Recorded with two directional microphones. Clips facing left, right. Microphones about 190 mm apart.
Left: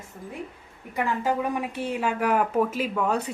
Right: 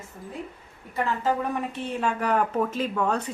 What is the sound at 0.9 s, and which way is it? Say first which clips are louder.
Speech: even; 10° left (ahead or behind).